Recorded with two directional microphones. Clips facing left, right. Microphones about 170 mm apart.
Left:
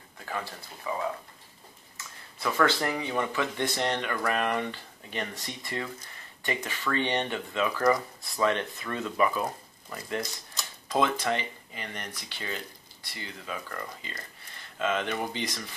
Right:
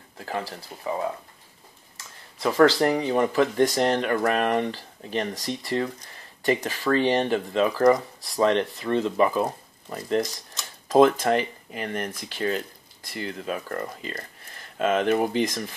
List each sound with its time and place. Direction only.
0.2 s speech: 35° right (ahead or behind)
2.4 s speech: 35° right (ahead or behind)
10.9 s speech: 45° right (ahead or behind)